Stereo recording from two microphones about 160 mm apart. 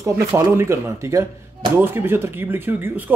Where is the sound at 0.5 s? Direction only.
15° right (ahead or behind).